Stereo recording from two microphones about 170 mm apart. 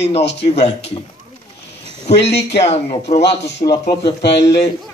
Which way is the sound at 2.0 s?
40° left (ahead or behind).